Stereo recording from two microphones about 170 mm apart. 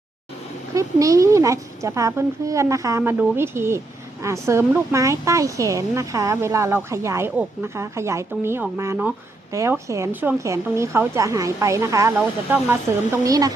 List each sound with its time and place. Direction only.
0.7 s a woman's voice: 20° right (ahead or behind)